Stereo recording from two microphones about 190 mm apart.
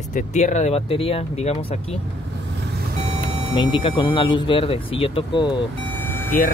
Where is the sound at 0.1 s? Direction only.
40° left (ahead or behind).